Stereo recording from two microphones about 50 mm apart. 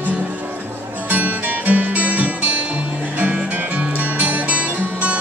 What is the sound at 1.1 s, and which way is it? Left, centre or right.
Music, right.